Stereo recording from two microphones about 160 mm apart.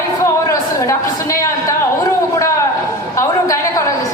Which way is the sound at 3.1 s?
20° left (ahead or behind).